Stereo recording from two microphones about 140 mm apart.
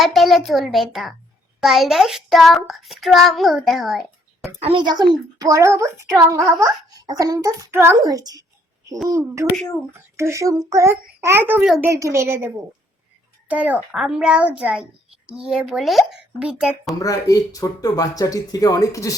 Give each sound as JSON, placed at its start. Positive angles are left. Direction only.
{"t": 0.0, "sound": "a child's voice", "side_deg": 0}
{"t": 1.6, "sound": "child singing", "side_deg": 0}
{"t": 4.6, "sound": "a woman's voice", "side_deg": -35}
{"t": 13.5, "sound": "a child's voice", "side_deg": -10}
{"t": 13.9, "sound": "child singing", "side_deg": 0}
{"t": 17.0, "sound": "speech", "side_deg": 25}